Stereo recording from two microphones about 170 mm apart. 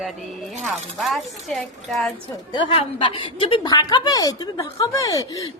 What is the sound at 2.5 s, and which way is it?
A woman's voice, 30° left (ahead or behind).